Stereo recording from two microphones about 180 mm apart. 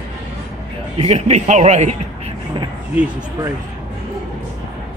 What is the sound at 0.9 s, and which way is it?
Speech, 35° right (ahead or behind).